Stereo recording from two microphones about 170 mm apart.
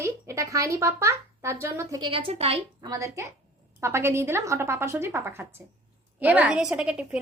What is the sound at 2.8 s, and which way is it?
A woman's voice, 20° right (ahead or behind).